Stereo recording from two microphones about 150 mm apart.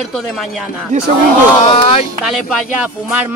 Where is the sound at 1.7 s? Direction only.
40° left (ahead or behind).